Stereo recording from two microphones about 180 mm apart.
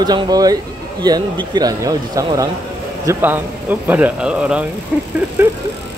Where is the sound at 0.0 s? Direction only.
25° right (ahead or behind).